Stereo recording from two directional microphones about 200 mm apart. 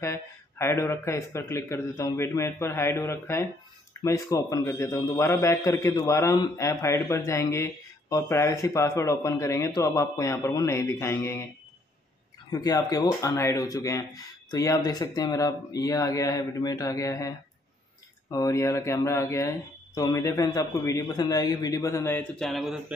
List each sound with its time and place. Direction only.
0.0 s a man's voice: 15° left (ahead or behind)
12.4 s a man's voice: 20° left (ahead or behind)
18.3 s a man's voice: 15° left (ahead or behind); by 22.9 s centre (ahead or behind)